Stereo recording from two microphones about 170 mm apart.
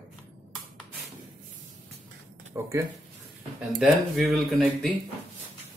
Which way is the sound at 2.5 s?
15° right (ahead or behind).